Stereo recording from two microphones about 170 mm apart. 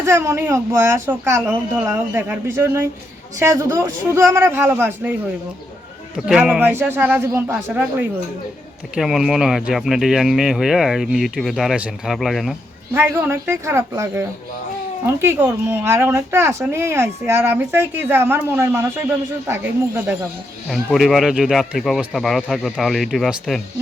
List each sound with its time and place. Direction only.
0.0 s speech: 15° right (ahead or behind)
6.1 s speech: 5° right (ahead or behind)
12.9 s speech: 15° right (ahead or behind)
20.7 s speech: centre (ahead or behind)